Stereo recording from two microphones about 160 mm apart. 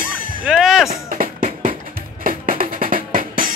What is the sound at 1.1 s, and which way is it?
Music, 60° right (ahead or behind).